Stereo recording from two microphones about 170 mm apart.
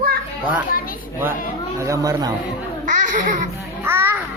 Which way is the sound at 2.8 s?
50° right (ahead or behind).